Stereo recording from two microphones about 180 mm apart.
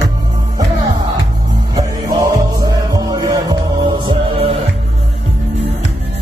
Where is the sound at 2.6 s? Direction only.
20° right (ahead or behind).